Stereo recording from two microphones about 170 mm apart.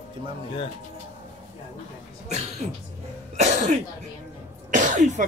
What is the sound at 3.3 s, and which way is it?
Cough, 40° right (ahead or behind).